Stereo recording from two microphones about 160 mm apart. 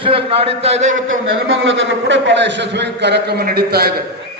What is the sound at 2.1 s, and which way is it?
A man's voice, 90° right.